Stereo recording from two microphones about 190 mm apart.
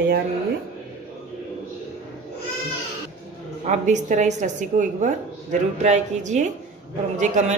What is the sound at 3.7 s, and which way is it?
A woman's voice, 40° right (ahead or behind).